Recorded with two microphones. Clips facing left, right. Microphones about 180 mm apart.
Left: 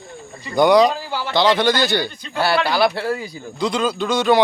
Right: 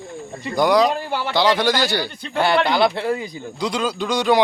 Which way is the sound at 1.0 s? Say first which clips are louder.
Right 2 dB; 60° right (ahead or behind).